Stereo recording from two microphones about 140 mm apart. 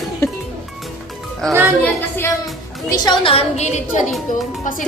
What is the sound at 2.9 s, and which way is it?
Speech, 30° left (ahead or behind).